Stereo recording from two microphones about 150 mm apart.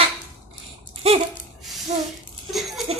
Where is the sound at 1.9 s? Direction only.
45° right (ahead or behind).